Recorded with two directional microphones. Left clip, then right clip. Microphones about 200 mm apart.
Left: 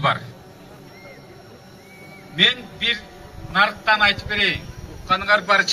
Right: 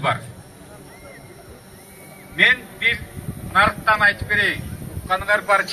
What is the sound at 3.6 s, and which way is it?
Speech, 10° right (ahead or behind).